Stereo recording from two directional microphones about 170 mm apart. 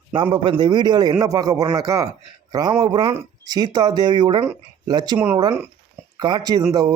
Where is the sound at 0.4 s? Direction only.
25° right (ahead or behind).